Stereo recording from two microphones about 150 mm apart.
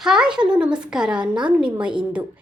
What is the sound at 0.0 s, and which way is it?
A woman's voice, 5° right (ahead or behind).